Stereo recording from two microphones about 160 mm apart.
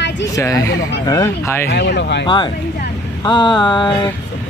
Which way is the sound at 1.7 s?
90° left.